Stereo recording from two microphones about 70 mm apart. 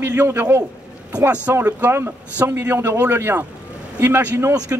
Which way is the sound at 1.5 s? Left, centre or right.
Right.